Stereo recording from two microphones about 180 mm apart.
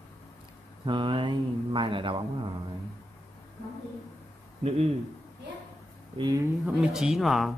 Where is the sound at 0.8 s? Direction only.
25° right (ahead or behind).